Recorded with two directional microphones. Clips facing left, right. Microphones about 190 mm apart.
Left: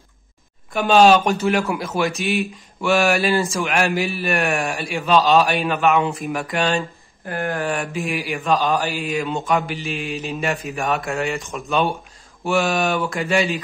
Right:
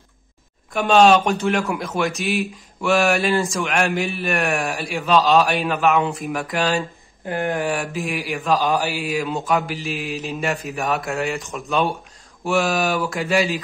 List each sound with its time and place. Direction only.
0.7 s speech: centre (ahead or behind)
6.8 s speech: 20° right (ahead or behind)
7.7 s speech: centre (ahead or behind)
9.0 s speech: centre (ahead or behind)